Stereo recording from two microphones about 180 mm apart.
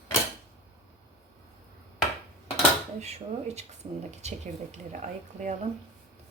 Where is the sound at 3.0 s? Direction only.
35° right (ahead or behind).